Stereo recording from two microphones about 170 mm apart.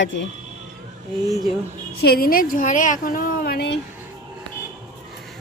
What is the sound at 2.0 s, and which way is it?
A woman's voice, 65° left (ahead or behind).